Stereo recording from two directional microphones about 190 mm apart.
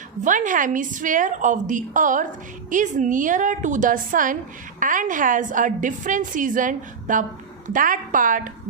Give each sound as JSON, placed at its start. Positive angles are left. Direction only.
{"t": 0.3, "sound": "a woman's voice", "side_deg": -45}